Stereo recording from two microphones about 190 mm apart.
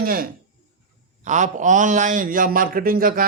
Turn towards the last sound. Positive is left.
turn(degrees=-50)  # may be behind; listen again after turning